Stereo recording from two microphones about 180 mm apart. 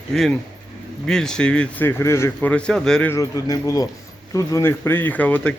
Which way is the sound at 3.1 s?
20° left (ahead or behind).